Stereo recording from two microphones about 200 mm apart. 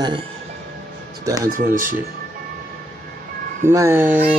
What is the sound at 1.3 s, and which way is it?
Speech, 15° right (ahead or behind).